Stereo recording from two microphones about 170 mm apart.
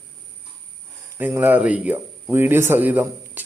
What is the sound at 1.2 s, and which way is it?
Speech, 10° right (ahead or behind).